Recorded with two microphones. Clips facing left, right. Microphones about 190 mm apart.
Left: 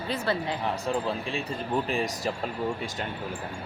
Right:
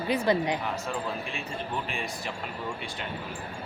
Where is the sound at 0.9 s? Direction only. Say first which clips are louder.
Left 4 dB; 30° left (ahead or behind).